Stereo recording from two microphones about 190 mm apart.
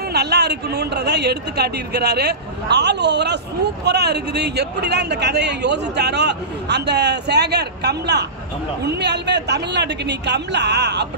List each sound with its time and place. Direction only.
0.1 s speech: 60° right (ahead or behind)